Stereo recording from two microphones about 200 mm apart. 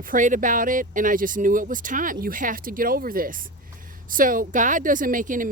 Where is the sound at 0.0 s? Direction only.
40° right (ahead or behind).